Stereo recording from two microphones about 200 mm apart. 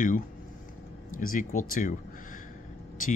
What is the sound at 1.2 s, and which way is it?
Speech, 45° left (ahead or behind).